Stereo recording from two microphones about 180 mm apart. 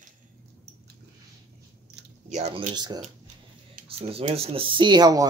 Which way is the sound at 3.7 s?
35° right (ahead or behind).